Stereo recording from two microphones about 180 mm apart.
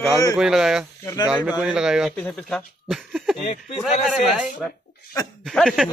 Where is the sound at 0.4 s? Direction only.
Centre (ahead or behind).